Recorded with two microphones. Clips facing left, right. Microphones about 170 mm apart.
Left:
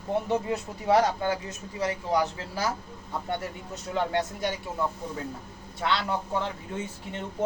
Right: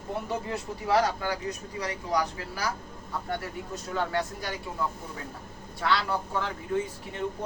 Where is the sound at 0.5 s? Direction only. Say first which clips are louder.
Left 1 dB; 25° left (ahead or behind).